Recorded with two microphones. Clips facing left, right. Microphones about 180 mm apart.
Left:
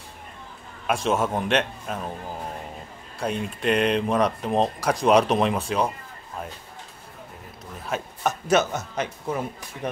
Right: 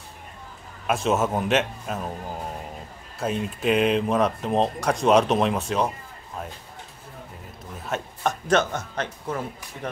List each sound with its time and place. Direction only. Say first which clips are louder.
0.8 s speech: right 1 dB; centre (ahead or behind)
3.2 s speech: right 1 dB; centre (ahead or behind)
7.7 s speech: even; centre (ahead or behind)